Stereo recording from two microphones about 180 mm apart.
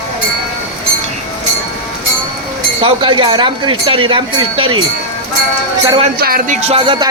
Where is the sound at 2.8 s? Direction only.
30° right (ahead or behind).